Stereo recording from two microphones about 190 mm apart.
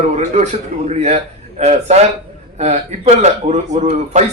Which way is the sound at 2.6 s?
35° right (ahead or behind).